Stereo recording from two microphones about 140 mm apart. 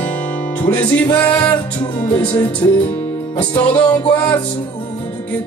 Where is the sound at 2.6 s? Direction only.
20° left (ahead or behind).